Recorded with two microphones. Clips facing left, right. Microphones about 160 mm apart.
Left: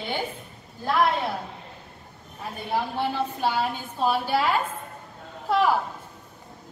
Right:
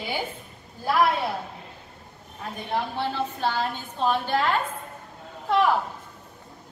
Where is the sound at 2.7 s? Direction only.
10° left (ahead or behind).